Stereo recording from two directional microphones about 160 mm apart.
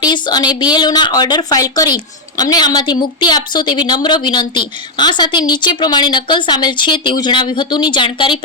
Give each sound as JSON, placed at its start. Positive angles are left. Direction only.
{"t": 0.0, "sound": "a woman's voice", "side_deg": 25}